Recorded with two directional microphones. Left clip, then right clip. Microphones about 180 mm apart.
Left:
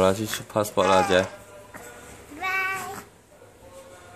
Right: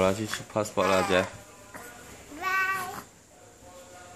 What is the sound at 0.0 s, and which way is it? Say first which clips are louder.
Speech: left 4 dB; 15° left (ahead or behind).